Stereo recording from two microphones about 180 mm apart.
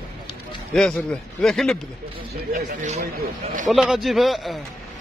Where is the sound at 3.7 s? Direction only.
Centre (ahead or behind).